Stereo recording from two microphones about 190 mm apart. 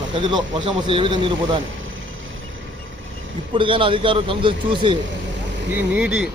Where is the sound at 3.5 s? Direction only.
25° right (ahead or behind).